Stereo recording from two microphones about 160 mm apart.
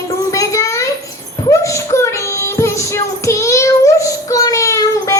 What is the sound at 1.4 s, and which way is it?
Child singing, 20° left (ahead or behind).